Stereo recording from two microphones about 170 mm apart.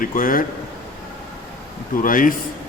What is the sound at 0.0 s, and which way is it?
Speech, 55° left (ahead or behind).